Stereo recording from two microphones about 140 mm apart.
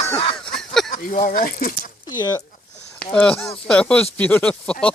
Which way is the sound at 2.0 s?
25° left (ahead or behind).